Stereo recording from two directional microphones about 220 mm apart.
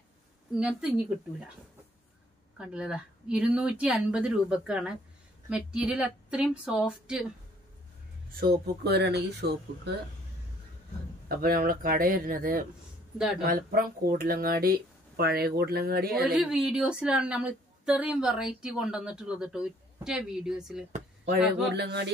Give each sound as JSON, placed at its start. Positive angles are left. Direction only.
{"t": 0.6, "sound": "a woman's voice", "side_deg": -5}
{"t": 2.5, "sound": "a woman's voice", "side_deg": -5}
{"t": 8.4, "sound": "speech", "side_deg": -50}
{"t": 11.2, "sound": "speech", "side_deg": -40}
{"t": 16.3, "sound": "a woman's voice", "side_deg": 0}
{"t": 21.7, "sound": "speech", "side_deg": -50}